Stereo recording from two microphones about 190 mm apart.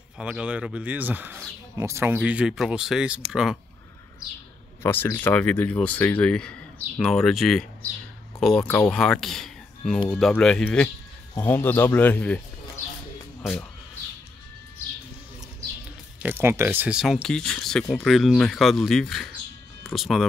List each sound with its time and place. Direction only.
0.2 s a man's voice: 5° right (ahead or behind)
4.8 s a man's voice: 10° left (ahead or behind)
12.8 s music: 40° left (ahead or behind)
13.4 s speech: 5° left (ahead or behind)
16.2 s a man's voice: 10° right (ahead or behind)